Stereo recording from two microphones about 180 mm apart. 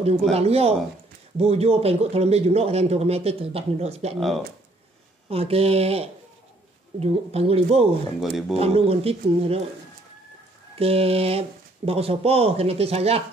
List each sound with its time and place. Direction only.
0.3 s speech: 35° right (ahead or behind)
4.2 s speech: centre (ahead or behind)
5.3 s speech: 35° right (ahead or behind)
8.2 s speech: centre (ahead or behind)
8.5 s speech: 35° right (ahead or behind)
10.8 s speech: 35° right (ahead or behind)